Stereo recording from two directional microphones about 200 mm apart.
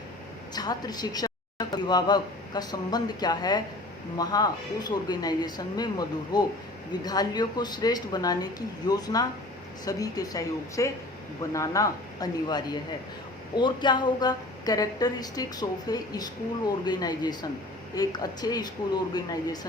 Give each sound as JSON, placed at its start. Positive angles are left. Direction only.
{"t": 0.5, "sound": "a woman's voice", "side_deg": 20}